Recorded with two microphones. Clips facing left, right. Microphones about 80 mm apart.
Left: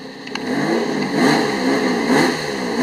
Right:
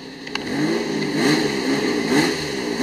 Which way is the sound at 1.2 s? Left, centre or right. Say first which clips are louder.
Left 4 dB; left.